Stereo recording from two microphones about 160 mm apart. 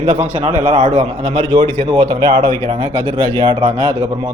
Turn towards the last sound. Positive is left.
turn(degrees=-30)  # may be behind; listen again after turning